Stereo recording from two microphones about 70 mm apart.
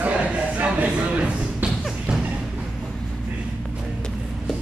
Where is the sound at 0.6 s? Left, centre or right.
Right.